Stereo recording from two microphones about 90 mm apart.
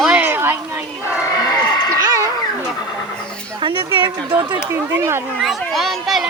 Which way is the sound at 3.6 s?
70° right (ahead or behind).